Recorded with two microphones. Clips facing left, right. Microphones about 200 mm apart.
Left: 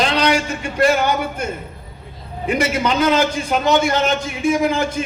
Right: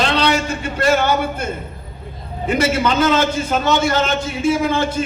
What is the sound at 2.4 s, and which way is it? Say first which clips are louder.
A man's voice: right 1 dB; 15° left (ahead or behind).